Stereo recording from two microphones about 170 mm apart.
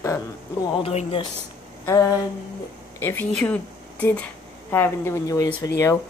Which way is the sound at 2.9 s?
15° left (ahead or behind).